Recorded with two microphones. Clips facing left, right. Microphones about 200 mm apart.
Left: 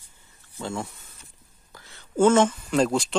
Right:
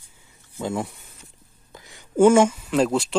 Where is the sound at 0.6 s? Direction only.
15° right (ahead or behind).